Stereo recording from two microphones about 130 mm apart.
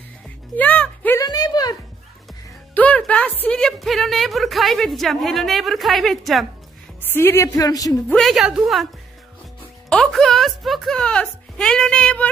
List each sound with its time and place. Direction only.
0.6 s music: 10° left (ahead or behind)
1.2 s a sound: 30° left (ahead or behind)
2.7 s music: 10° left (ahead or behind)
3.4 s a woman's voice: 5° left (ahead or behind)
7.0 s a woman's voice: 15° left (ahead or behind)
8.1 s a woman's voice: centre (ahead or behind)
9.8 s a woman's voice: 5° left (ahead or behind)